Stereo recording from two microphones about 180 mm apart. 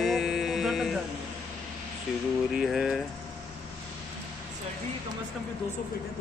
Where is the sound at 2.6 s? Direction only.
Centre (ahead or behind).